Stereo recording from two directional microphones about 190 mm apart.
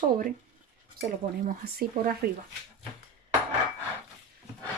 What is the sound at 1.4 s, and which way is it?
Speech, 50° right (ahead or behind).